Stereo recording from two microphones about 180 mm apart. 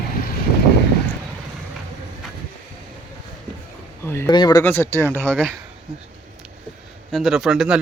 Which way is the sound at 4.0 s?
15° left (ahead or behind).